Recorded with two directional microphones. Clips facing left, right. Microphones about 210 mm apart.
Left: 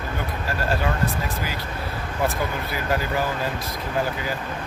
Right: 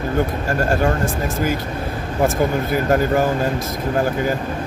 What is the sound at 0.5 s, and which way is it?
Speech, 45° right (ahead or behind).